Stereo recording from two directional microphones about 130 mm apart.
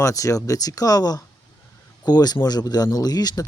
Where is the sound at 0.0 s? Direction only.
25° left (ahead or behind).